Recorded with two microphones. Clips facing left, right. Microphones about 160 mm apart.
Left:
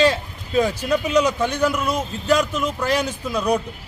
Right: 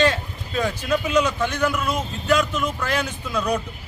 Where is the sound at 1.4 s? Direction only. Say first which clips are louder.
Left 2 dB; 35° left (ahead or behind).